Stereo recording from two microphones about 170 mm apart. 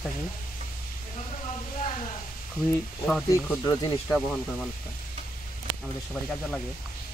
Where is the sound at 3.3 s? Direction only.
15° left (ahead or behind).